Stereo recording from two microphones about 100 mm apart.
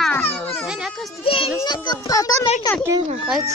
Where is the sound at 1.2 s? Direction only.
65° left (ahead or behind).